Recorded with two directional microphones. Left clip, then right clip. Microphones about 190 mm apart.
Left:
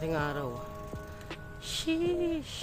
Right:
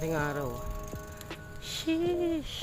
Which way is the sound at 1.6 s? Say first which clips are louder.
Even; 5° right (ahead or behind).